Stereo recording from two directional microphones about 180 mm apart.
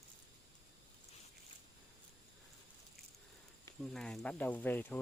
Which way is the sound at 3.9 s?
5° left (ahead or behind).